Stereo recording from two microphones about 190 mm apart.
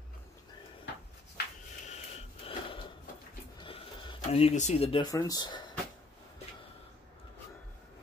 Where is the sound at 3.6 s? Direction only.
30° left (ahead or behind).